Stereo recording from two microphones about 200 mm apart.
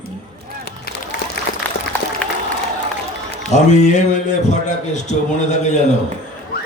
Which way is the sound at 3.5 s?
35° left (ahead or behind).